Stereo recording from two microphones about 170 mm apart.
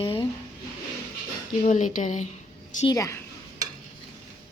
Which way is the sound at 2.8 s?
20° left (ahead or behind).